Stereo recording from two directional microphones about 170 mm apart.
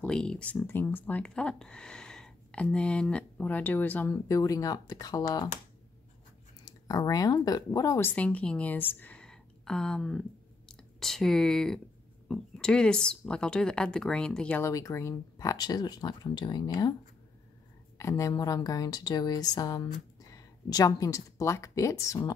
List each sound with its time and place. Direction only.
0.0 s speech: 5° left (ahead or behind); by 5.5 s 20° left (ahead or behind)
6.6 s speech: 20° left (ahead or behind)
14.7 s a woman's voice: 20° left (ahead or behind)
17.9 s a woman's voice: 15° left (ahead or behind)